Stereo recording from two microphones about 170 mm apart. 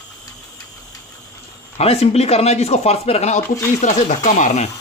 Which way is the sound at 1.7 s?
40° left (ahead or behind).